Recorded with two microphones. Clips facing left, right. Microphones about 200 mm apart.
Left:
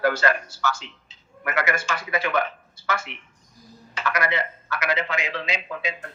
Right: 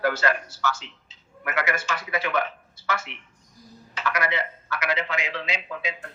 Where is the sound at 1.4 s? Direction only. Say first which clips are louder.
Left 2 dB; 45° left (ahead or behind).